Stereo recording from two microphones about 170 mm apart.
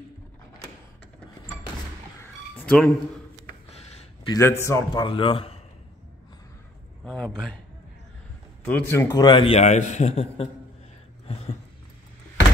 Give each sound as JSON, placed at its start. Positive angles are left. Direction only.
{"t": 2.6, "sound": "speech", "side_deg": 5}
{"t": 4.4, "sound": "a man's voice", "side_deg": 15}
{"t": 5.0, "sound": "a man's voice", "side_deg": 30}
{"t": 7.1, "sound": "a man's voice", "side_deg": 5}
{"t": 8.6, "sound": "a man's voice", "side_deg": 10}
{"t": 11.2, "sound": "a sound", "side_deg": 35}